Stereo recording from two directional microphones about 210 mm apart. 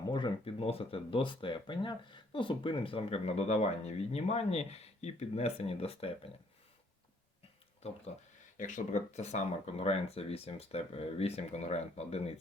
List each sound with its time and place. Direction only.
0.1 s speech: 20° left (ahead or behind)
7.8 s speech: 30° left (ahead or behind)